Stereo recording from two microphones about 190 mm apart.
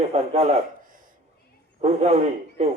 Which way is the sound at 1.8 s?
35° right (ahead or behind).